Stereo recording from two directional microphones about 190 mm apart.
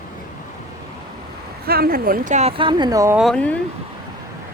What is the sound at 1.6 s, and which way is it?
Speech, 55° right (ahead or behind).